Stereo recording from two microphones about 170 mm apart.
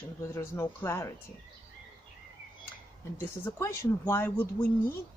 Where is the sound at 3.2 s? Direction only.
15° left (ahead or behind).